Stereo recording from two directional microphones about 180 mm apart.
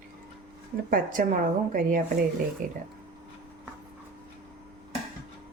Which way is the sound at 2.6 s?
50° right (ahead or behind).